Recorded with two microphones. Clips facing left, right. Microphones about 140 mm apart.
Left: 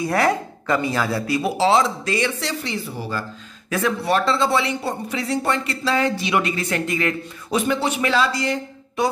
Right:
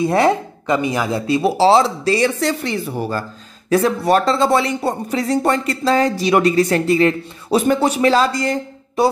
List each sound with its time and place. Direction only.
0.0 s speech: 25° right (ahead or behind)
2.6 s speech: 55° right (ahead or behind)
3.7 s speech: 40° right (ahead or behind)